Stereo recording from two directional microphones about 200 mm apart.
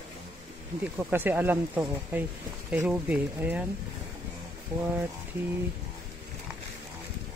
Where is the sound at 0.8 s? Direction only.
10° right (ahead or behind).